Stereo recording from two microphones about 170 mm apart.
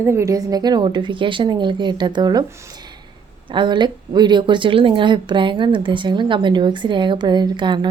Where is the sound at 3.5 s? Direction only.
25° right (ahead or behind).